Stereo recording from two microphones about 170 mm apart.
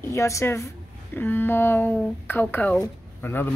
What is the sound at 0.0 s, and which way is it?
Speech, 15° left (ahead or behind).